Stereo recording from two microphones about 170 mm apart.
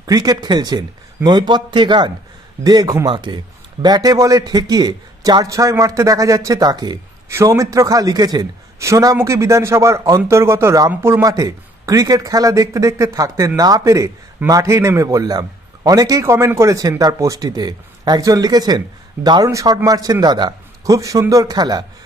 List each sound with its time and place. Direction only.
0.0 s a man's voice: 20° right (ahead or behind)